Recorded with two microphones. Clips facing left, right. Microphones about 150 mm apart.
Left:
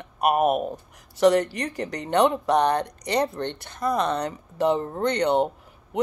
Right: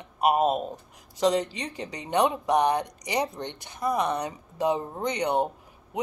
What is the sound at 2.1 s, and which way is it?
Speech, 10° right (ahead or behind).